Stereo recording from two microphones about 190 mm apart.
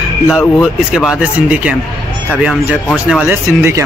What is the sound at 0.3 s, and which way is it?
Speech, centre (ahead or behind).